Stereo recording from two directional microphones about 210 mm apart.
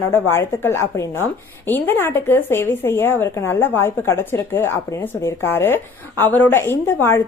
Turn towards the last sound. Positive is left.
turn(degrees=10)  # may be behind; listen again after turning